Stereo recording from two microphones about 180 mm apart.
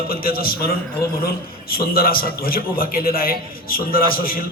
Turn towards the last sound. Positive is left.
turn(degrees=55)  # may be behind; listen again after turning